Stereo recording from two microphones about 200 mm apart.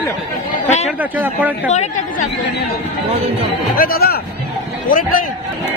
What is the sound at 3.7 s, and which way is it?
Speech, 45° left (ahead or behind).